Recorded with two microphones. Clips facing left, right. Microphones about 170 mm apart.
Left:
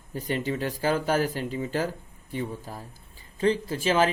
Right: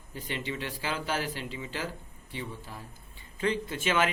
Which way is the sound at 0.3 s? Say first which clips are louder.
Left 7 dB; 40° left (ahead or behind).